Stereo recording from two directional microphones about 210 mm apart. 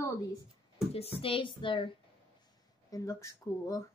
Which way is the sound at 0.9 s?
30° left (ahead or behind).